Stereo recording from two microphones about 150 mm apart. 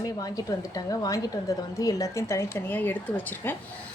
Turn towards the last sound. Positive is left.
turn(degrees=15)  # may be behind; listen again after turning